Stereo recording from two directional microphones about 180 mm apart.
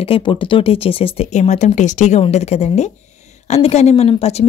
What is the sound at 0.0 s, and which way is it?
Speech, 30° left (ahead or behind).